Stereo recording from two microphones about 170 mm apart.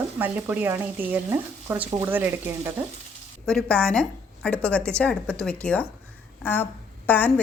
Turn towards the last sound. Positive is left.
turn(degrees=10)  # may be behind; listen again after turning